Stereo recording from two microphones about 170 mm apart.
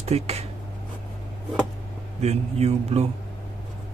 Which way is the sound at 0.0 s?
40° right (ahead or behind).